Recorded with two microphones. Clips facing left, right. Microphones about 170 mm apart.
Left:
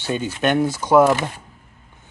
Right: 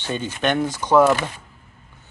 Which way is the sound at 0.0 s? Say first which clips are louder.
Left 2 dB; 10° left (ahead or behind).